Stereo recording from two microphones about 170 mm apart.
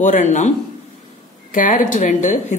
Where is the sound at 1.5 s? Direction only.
50° left (ahead or behind).